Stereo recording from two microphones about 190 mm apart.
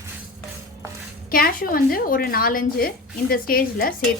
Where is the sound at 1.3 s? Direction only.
50° left (ahead or behind).